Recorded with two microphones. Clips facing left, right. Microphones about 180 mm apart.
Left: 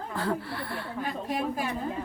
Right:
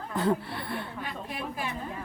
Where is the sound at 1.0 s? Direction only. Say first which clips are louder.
Left 6 dB; 40° left (ahead or behind).